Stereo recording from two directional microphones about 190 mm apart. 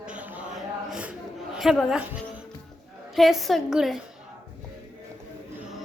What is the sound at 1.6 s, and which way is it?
A woman's voice, centre (ahead or behind).